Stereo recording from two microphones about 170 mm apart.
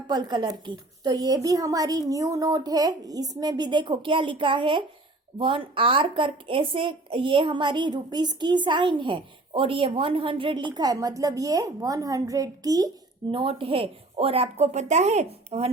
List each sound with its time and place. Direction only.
0.1 s a woman's voice: 25° right (ahead or behind)